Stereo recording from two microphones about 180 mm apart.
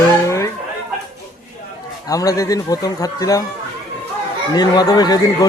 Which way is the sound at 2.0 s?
20° left (ahead or behind).